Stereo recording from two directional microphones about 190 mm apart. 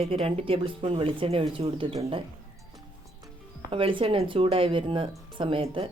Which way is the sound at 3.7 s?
25° right (ahead or behind).